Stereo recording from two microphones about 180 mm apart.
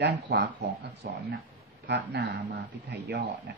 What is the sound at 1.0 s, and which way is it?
Speech, 60° right (ahead or behind).